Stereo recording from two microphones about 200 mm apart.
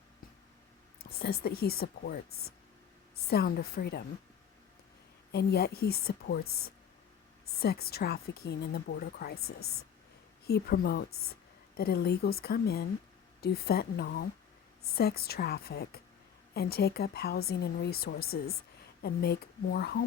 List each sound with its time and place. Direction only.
0.9 s speech: 50° left (ahead or behind)
5.3 s speech: 55° left (ahead or behind)
6.4 s speech: 90° left
7.6 s speech: 50° left (ahead or behind)
9.6 s speech: 90° left
10.4 s speech: 50° left (ahead or behind)